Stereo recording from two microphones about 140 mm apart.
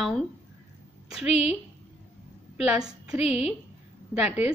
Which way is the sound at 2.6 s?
5° right (ahead or behind).